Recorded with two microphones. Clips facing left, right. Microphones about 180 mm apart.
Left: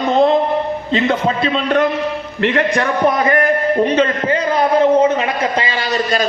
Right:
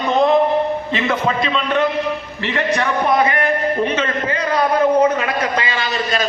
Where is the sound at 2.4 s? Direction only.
55° left (ahead or behind).